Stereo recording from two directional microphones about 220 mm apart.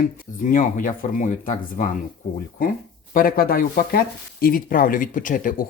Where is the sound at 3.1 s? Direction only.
40° left (ahead or behind).